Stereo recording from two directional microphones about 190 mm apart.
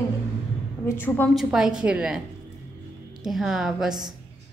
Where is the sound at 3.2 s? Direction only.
Centre (ahead or behind).